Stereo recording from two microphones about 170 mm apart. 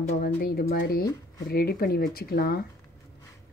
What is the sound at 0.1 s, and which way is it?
Speech, 65° left (ahead or behind).